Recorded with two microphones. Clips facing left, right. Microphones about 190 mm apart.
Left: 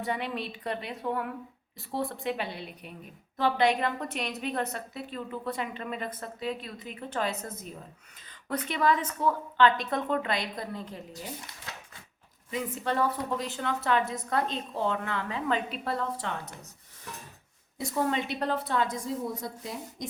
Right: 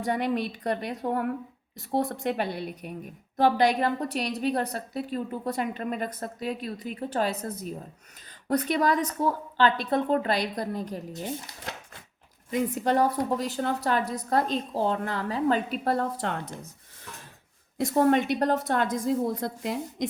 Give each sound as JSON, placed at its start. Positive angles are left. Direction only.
{"t": 0.0, "sound": "a woman's voice", "side_deg": -45}
{"t": 12.5, "sound": "a woman's voice", "side_deg": -45}
{"t": 17.9, "sound": "a woman's voice", "side_deg": -55}
{"t": 18.9, "sound": "a woman's voice", "side_deg": -90}